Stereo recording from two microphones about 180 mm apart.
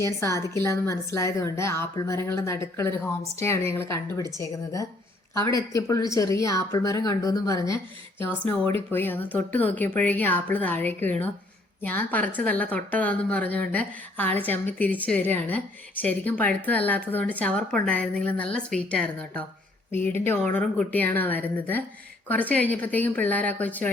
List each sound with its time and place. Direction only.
0.0 s speech: 15° left (ahead or behind)
8.9 s speech: 10° left (ahead or behind)